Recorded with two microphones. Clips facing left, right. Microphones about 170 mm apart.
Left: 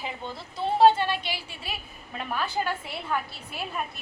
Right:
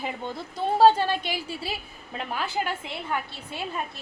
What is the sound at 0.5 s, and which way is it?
A woman's voice, 40° right (ahead or behind).